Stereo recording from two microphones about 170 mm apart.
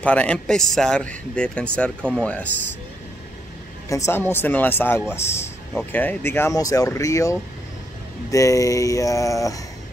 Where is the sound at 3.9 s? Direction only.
15° left (ahead or behind).